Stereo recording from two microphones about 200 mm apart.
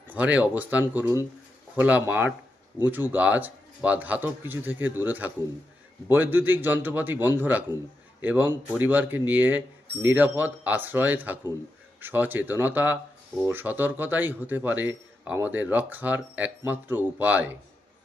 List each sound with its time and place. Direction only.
0.1 s a man's voice: 5° right (ahead or behind)